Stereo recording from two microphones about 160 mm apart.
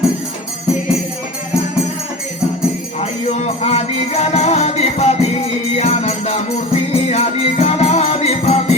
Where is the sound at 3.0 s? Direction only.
45° left (ahead or behind).